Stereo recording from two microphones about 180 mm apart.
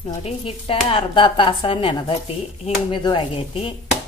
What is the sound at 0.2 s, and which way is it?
Speech, 30° left (ahead or behind).